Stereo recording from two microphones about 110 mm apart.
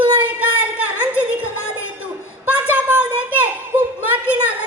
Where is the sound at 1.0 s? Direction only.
15° right (ahead or behind).